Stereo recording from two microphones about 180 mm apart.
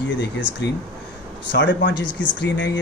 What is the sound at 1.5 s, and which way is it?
Speech, 80° left.